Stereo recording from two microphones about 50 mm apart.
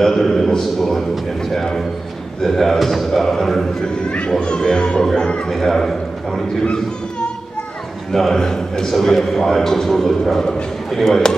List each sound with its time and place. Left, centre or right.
0.0 s a man's voice: centre
3.8 s a man's voice: centre
5.5 s a man's voice: centre
6.6 s a child's voice: centre
8.1 s a man's voice: centre